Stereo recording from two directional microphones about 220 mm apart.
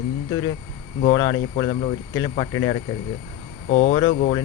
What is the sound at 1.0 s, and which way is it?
Speech, 20° left (ahead or behind).